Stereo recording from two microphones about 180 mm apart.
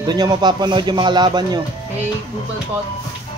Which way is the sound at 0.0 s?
25° right (ahead or behind).